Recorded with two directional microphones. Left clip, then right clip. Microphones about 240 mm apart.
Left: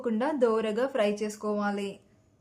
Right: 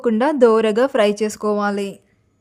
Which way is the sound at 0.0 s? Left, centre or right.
Right.